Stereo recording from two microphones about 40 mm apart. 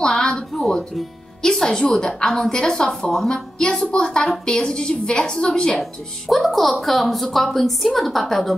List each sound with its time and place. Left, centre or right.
0.0 s a sound: centre
0.6 s speech: centre
1.4 s a woman's voice: centre
2.2 s a woman's voice: centre
2.5 s a woman's voice: centre
3.5 s a woman's voice: centre
6.3 s a woman's voice: centre